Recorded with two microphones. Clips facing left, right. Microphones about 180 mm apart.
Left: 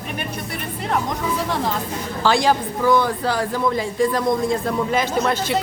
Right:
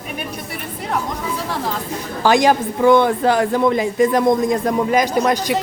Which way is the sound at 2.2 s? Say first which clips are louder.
Right 4 dB; 15° right (ahead or behind).